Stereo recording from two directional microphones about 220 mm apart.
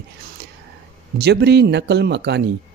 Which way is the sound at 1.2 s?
50° right (ahead or behind).